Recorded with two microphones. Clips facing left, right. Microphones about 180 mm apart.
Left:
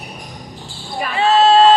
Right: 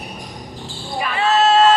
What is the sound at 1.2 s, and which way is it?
Basketball bounce, 30° left (ahead or behind).